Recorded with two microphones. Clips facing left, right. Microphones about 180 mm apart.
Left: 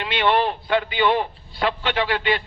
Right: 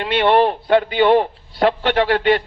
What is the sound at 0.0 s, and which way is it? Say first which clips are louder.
A man's voice: right 6 dB; 45° right (ahead or behind).